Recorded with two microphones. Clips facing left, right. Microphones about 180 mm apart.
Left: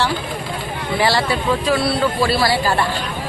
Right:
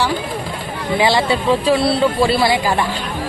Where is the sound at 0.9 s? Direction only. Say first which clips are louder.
Right 3 dB; 20° right (ahead or behind).